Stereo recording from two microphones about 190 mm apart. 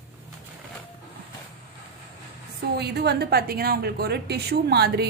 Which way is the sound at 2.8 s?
60° right (ahead or behind).